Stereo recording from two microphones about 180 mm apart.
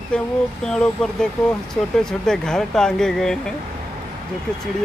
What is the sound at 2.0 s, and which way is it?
Speech, 5° left (ahead or behind).